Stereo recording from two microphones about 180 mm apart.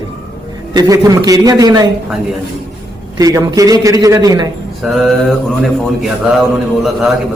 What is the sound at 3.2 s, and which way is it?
A man's voice, 20° right (ahead or behind).